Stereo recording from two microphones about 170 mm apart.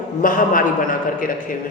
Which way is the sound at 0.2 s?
55° left (ahead or behind).